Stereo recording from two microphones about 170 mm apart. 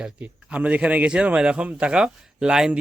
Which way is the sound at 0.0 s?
5° right (ahead or behind).